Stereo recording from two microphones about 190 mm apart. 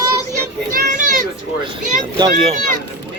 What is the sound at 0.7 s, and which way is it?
Children playing, 50° right (ahead or behind).